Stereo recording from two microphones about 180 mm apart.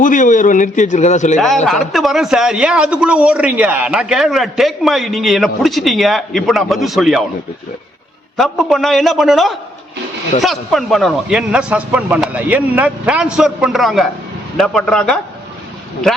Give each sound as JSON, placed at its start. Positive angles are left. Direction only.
{"t": 0.0, "sound": "a man's voice", "side_deg": 45}
{"t": 1.6, "sound": "a man's voice", "side_deg": 0}
{"t": 8.4, "sound": "a man's voice", "side_deg": 0}